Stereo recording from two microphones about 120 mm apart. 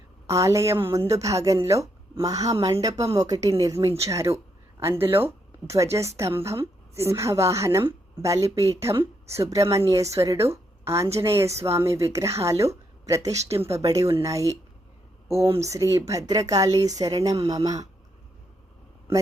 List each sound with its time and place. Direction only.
0.3 s a woman's voice: 25° right (ahead or behind)